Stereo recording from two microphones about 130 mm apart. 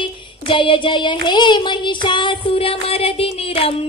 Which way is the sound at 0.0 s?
40° left (ahead or behind).